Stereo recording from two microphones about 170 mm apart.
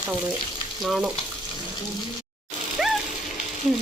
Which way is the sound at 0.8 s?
Centre (ahead or behind).